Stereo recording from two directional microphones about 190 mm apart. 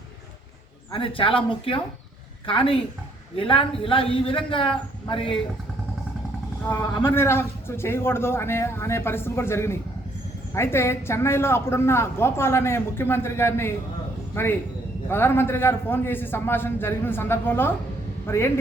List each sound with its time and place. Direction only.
0.9 s a man's voice: 25° left (ahead or behind)
6.7 s a man's voice: 10° left (ahead or behind)